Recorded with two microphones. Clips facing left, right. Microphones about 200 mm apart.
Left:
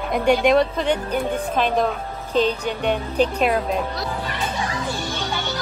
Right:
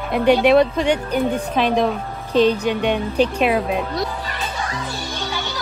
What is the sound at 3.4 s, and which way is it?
Speech, 5° right (ahead or behind).